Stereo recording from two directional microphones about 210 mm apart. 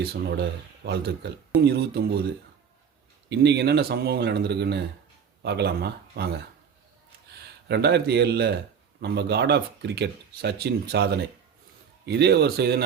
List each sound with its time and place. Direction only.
0.9 s speech: 50° right (ahead or behind)
3.2 s speech: 55° right (ahead or behind)
7.7 s speech: 50° right (ahead or behind)